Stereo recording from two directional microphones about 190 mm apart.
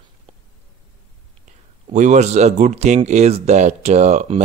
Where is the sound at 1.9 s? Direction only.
40° right (ahead or behind).